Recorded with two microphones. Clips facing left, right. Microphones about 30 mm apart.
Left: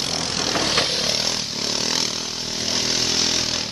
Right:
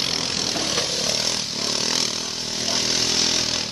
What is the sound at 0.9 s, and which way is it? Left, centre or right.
Vehicle, centre.